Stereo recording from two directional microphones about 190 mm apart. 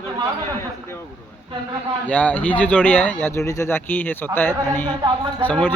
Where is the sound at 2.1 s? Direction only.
10° left (ahead or behind).